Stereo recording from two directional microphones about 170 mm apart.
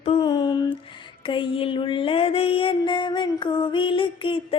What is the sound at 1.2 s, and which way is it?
Mantra, 30° left (ahead or behind).